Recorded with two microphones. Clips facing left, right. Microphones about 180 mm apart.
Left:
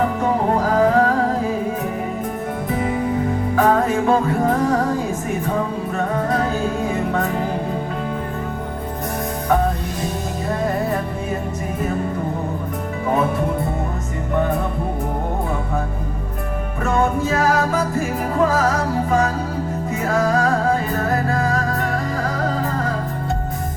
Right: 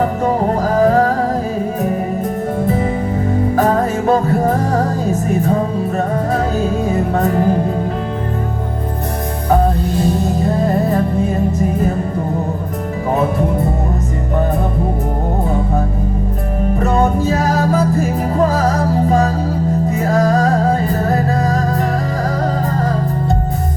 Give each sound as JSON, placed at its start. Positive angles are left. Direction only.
{"t": 0.0, "sound": "music", "side_deg": -40}
{"t": 3.5, "sound": "music", "side_deg": -40}
{"t": 7.1, "sound": "music", "side_deg": -40}
{"t": 16.8, "sound": "music", "side_deg": -35}